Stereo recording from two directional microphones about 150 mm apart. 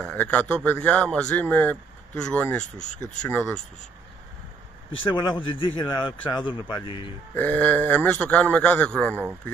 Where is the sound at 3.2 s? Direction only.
10° left (ahead or behind).